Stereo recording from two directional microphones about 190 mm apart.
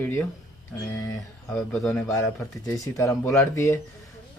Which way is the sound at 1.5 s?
Centre (ahead or behind).